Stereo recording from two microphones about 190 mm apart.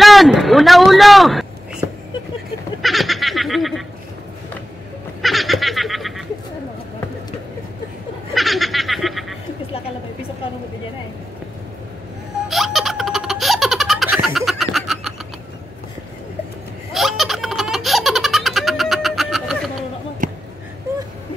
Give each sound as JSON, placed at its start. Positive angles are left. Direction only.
{"t": 0.0, "sound": "speech", "side_deg": 0}
{"t": 2.8, "sound": "snicker", "side_deg": 0}
{"t": 5.2, "sound": "a sound", "side_deg": 0}
{"t": 8.4, "sound": "snicker", "side_deg": 0}
{"t": 12.4, "sound": "baby laughter", "side_deg": 0}
{"t": 16.9, "sound": "baby laughter", "side_deg": 0}
{"t": 20.2, "sound": "a sound", "side_deg": -45}